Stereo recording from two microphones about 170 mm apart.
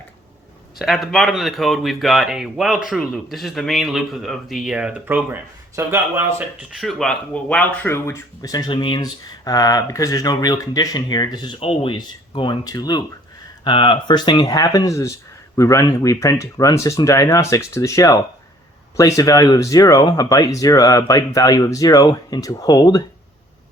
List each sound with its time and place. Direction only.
0.8 s speech: centre (ahead or behind)
6.7 s speech: centre (ahead or behind); by 23.0 s 20° left (ahead or behind)